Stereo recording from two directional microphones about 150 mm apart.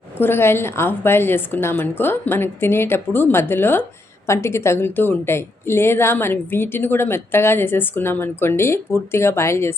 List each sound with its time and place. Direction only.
0.2 s a woman's voice: 15° left (ahead or behind)